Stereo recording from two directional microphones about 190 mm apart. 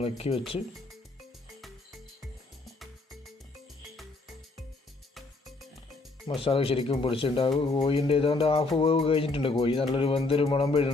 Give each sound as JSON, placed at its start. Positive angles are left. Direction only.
{"t": 0.0, "sound": "speech", "side_deg": 30}
{"t": 2.7, "sound": "music", "side_deg": 0}
{"t": 5.1, "sound": "music", "side_deg": 0}
{"t": 6.2, "sound": "speech", "side_deg": 30}